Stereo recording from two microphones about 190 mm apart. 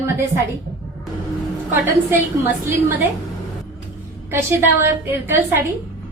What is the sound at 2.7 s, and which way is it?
Speech, 15° right (ahead or behind).